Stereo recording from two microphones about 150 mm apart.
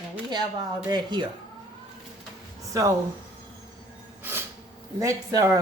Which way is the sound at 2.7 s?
20° right (ahead or behind).